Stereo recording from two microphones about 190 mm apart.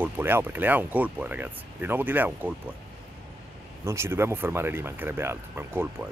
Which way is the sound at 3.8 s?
15° right (ahead or behind).